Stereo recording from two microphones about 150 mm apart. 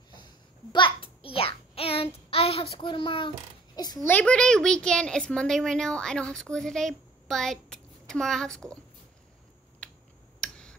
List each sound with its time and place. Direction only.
0.7 s a sound: 35° left (ahead or behind)
1.8 s child singing: 40° left (ahead or behind)
3.7 s a child's voice: 25° left (ahead or behind)
4.1 s a woman's voice: 10° left (ahead or behind)
9.8 s a sound: 5° left (ahead or behind)
10.4 s tick: 5° left (ahead or behind)